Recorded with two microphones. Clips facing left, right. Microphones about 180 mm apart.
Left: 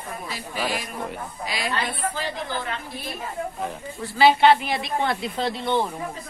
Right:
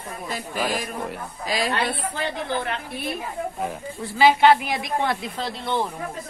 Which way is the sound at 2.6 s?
60° right (ahead or behind).